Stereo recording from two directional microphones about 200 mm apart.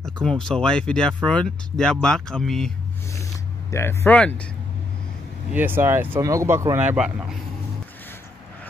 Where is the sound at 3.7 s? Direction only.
15° left (ahead or behind).